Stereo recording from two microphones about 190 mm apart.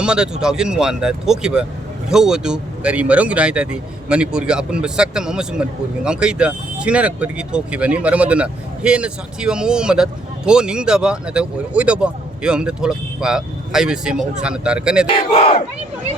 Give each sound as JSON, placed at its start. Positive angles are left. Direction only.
{"t": 0.0, "sound": "speech", "side_deg": -5}
{"t": 15.3, "sound": "battle cry", "side_deg": 30}